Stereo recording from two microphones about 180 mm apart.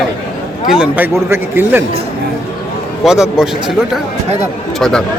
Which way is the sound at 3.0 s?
5° right (ahead or behind).